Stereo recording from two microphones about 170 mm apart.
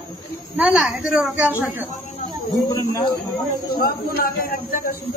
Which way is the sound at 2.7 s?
20° left (ahead or behind).